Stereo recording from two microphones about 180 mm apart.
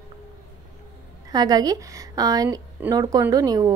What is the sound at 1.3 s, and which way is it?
A woman's voice, 20° right (ahead or behind).